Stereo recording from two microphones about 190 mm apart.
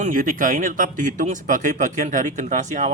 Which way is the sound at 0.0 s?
45° right (ahead or behind).